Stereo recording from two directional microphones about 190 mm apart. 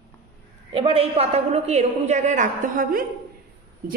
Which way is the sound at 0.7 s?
30° right (ahead or behind).